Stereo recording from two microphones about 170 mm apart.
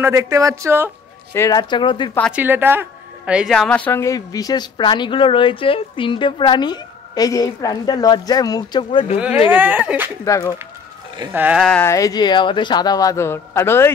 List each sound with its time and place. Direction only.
0.0 s speech: 20° right (ahead or behind)
1.3 s speech: 20° left (ahead or behind)
2.3 s speech: 10° right (ahead or behind); by 9.0 s 25° left (ahead or behind)
9.5 s speech: 10° right (ahead or behind)
10.2 s speech: 20° left (ahead or behind)
11.3 s speech: 5° right (ahead or behind)
11.7 s speech: 15° left (ahead or behind)